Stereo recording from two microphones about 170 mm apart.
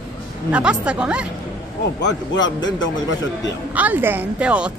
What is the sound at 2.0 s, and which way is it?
Speech, 90° left.